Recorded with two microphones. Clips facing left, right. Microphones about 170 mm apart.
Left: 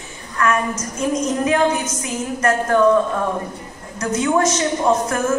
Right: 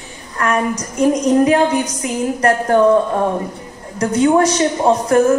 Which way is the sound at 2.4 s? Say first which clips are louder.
Right 2 dB; 35° right (ahead or behind).